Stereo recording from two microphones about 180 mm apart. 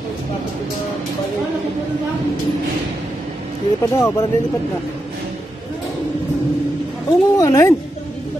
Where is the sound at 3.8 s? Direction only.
15° left (ahead or behind).